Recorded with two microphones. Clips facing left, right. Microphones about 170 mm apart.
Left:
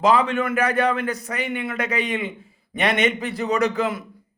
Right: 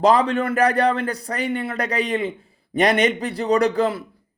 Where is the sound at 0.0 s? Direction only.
35° right (ahead or behind).